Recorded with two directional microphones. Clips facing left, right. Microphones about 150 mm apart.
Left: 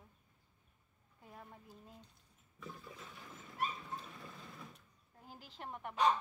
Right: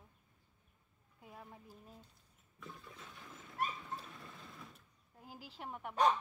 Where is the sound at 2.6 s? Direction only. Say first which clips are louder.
Left 2 dB; centre (ahead or behind).